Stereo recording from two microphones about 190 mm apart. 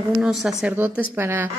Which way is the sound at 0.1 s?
Centre (ahead or behind).